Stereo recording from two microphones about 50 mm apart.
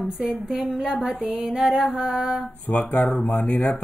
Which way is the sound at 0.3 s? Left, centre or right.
Centre.